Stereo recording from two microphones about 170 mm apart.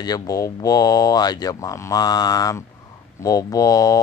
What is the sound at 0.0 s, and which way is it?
Mantra, 20° left (ahead or behind).